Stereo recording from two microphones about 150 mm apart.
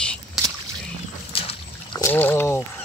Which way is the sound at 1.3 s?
40° left (ahead or behind).